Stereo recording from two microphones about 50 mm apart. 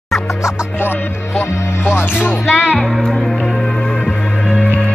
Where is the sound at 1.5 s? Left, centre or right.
Left.